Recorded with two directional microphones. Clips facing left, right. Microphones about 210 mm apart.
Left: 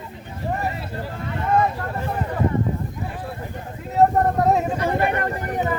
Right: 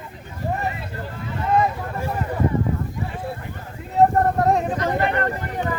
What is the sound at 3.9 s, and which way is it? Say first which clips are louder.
Vehicle: even; centre (ahead or behind).